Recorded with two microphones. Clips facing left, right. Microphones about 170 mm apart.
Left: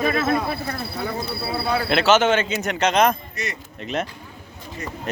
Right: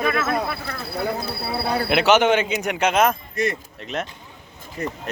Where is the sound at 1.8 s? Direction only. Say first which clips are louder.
Right 1 dB; 15° right (ahead or behind).